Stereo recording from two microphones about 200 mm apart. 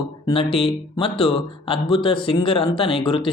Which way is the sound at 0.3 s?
25° left (ahead or behind).